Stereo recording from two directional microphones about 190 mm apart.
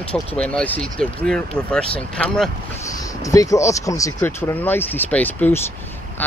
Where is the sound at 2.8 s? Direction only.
15° left (ahead or behind).